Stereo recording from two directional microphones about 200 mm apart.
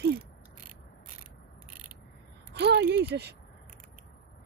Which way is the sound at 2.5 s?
60° right (ahead or behind).